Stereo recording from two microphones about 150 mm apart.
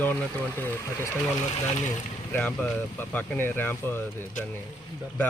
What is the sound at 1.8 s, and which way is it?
Speech, 55° left (ahead or behind).